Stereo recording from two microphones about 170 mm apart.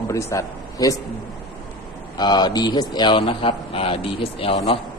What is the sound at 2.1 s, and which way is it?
A man's voice, 25° left (ahead or behind).